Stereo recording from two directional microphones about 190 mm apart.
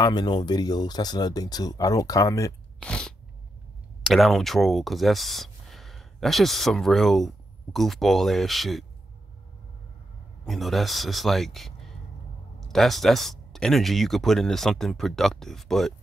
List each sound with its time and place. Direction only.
0.0 s speech: 20° left (ahead or behind)
2.8 s sneeze: 5° left (ahead or behind)
4.0 s speech: centre (ahead or behind)
10.4 s speech: centre (ahead or behind)